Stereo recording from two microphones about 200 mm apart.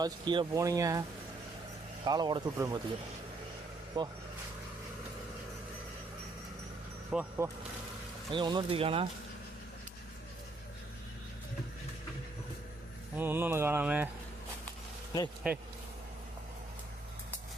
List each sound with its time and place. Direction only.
0.0 s speech: 20° right (ahead or behind)
2.0 s speech: 20° right (ahead or behind)
3.9 s speech: 25° right (ahead or behind)
7.1 s speech: 10° right (ahead or behind)
8.3 s speech: 25° right (ahead or behind)
13.1 s speech: 10° right (ahead or behind)